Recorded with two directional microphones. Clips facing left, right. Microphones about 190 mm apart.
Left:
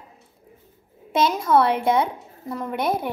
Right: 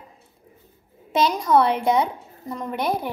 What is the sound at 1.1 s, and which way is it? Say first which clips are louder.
A woman's voice: even; 5° left (ahead or behind).